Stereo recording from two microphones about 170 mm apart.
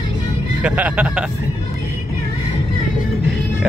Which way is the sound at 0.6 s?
10° right (ahead or behind).